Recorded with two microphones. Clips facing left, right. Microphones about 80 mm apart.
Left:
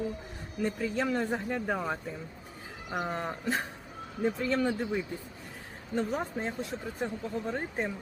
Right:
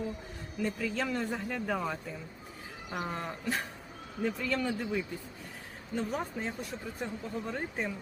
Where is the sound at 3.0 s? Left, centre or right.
Left.